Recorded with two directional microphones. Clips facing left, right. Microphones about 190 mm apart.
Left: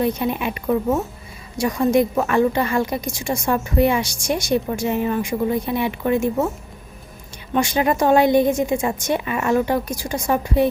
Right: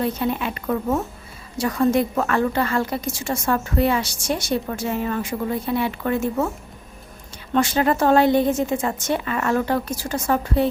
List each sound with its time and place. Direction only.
0.0 s a woman's voice: 15° left (ahead or behind)
7.5 s a woman's voice: 15° left (ahead or behind)